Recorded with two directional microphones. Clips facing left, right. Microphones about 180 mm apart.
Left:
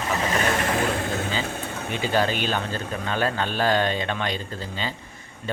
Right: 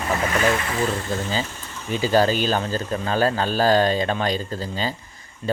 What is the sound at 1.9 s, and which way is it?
Speech, 40° right (ahead or behind).